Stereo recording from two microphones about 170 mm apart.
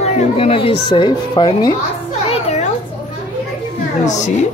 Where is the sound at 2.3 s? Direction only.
40° left (ahead or behind).